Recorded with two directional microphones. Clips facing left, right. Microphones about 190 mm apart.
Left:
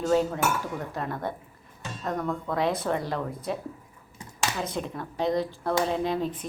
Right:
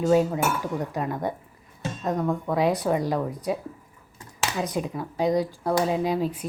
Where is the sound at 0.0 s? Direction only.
10° right (ahead or behind).